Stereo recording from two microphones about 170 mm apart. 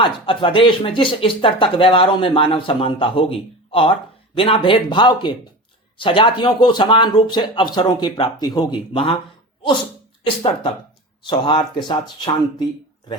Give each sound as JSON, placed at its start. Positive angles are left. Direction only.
{"t": 0.0, "sound": "speech", "side_deg": 30}
{"t": 10.2, "sound": "speech", "side_deg": 30}